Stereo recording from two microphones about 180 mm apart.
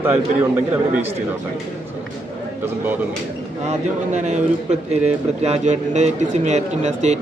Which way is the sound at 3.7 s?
40° right (ahead or behind).